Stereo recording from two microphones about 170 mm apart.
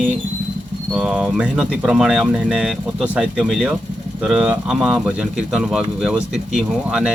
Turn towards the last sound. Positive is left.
turn(degrees=-5)  # may be behind; listen again after turning